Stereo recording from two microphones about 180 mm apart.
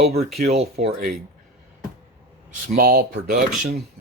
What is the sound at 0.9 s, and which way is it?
Speech, 50° right (ahead or behind).